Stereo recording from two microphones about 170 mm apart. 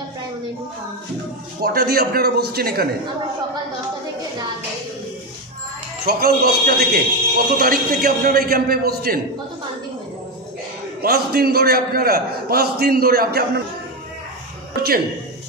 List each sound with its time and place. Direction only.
1.6 s a man's voice: 65° right (ahead or behind)
6.0 s a man's voice: 60° right (ahead or behind)
11.0 s a man's voice: 65° right (ahead or behind)